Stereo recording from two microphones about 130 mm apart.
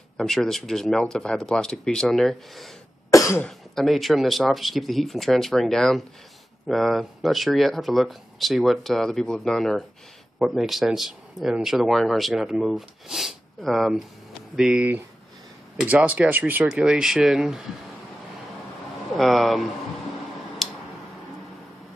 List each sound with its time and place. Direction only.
0.2 s speech: 5° left (ahead or behind)
3.1 s cough: 25° left (ahead or behind)
3.4 s speech: centre (ahead or behind)
19.1 s speech: centre (ahead or behind)
20.6 s tick-tock: centre (ahead or behind)